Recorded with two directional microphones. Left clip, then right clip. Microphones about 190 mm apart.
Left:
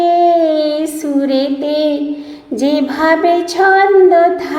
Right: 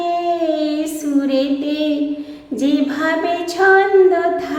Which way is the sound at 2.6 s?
10° left (ahead or behind).